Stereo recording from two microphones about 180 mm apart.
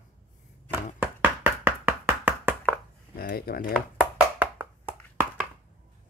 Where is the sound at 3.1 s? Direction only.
55° left (ahead or behind).